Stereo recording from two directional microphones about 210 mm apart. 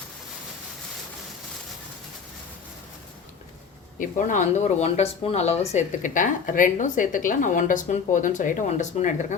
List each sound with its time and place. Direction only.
4.0 s speech: 35° left (ahead or behind)